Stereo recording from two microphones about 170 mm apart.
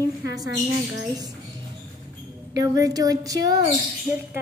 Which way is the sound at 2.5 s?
20° right (ahead or behind).